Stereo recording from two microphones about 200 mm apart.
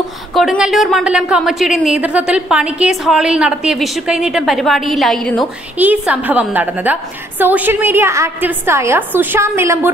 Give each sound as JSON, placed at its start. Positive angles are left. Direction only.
{"t": 0.3, "sound": "a woman's voice", "side_deg": 0}
{"t": 5.8, "sound": "a woman's voice", "side_deg": -10}